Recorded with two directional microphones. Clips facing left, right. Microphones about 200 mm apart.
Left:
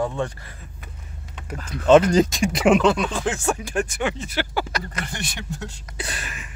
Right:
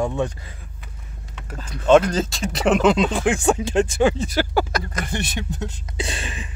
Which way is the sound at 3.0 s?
15° right (ahead or behind).